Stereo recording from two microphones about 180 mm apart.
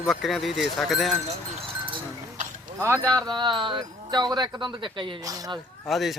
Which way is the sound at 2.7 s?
15° right (ahead or behind).